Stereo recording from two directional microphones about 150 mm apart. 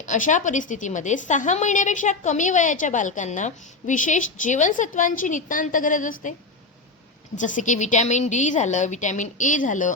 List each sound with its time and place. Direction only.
0.0 s a woman's voice: 55° left (ahead or behind)
7.3 s a woman's voice: 60° left (ahead or behind)